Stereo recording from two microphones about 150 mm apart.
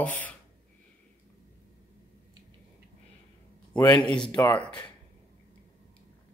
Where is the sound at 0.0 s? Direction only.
10° left (ahead or behind).